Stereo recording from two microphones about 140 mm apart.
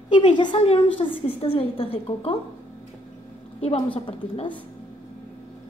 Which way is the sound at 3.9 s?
45° left (ahead or behind).